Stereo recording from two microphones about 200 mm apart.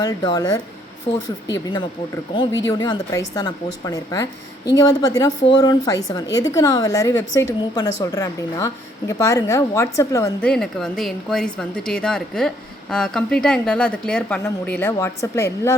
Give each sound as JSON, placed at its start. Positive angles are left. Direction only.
{"t": 0.0, "sound": "a woman's voice", "side_deg": 20}
{"t": 1.1, "sound": "a woman's voice", "side_deg": 30}
{"t": 2.3, "sound": "a woman's voice", "side_deg": 20}
{"t": 10.5, "sound": "a woman's voice", "side_deg": 5}